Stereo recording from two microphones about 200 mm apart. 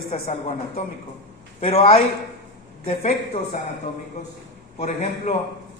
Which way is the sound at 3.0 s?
35° left (ahead or behind).